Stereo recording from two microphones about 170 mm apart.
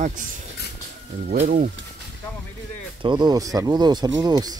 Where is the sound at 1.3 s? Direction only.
50° right (ahead or behind).